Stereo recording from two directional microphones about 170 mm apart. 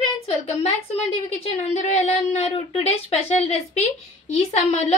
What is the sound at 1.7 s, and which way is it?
A woman's voice, 40° left (ahead or behind).